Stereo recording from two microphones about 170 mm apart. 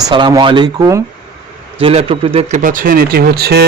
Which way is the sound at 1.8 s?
35° right (ahead or behind).